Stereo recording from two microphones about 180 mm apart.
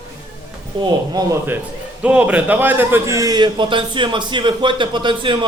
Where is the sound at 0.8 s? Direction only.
25° right (ahead or behind).